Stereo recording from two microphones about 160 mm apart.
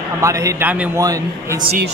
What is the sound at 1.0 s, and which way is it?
Speech, 20° right (ahead or behind).